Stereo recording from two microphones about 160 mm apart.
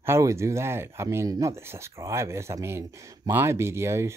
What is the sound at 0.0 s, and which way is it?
Speech, 15° right (ahead or behind).